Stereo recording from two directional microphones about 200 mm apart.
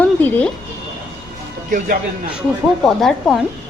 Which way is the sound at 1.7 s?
40° right (ahead or behind).